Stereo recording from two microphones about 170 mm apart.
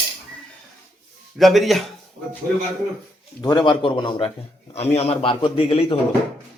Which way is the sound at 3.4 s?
25° left (ahead or behind).